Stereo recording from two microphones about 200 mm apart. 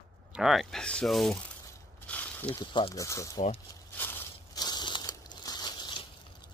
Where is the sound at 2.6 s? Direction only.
25° left (ahead or behind).